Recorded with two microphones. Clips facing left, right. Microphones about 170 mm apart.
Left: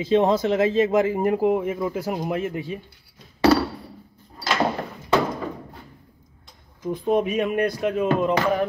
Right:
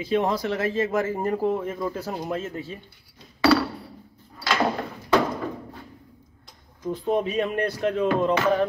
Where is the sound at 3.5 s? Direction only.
40° left (ahead or behind).